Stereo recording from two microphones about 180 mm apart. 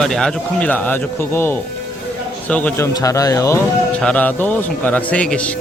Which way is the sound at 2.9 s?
20° left (ahead or behind).